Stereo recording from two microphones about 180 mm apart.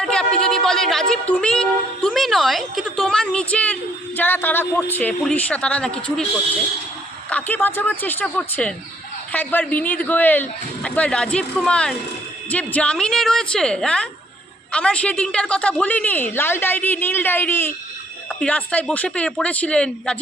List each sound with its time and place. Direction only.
0.0 s a sound: 5° left (ahead or behind)
1.1 s a woman's voice: 5° left (ahead or behind)
7.3 s a woman's voice: 10° left (ahead or behind)